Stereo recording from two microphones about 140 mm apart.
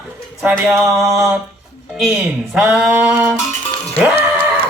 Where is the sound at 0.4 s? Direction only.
15° right (ahead or behind).